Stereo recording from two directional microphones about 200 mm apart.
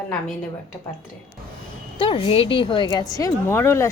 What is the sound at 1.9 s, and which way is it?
A woman's voice, 25° left (ahead or behind).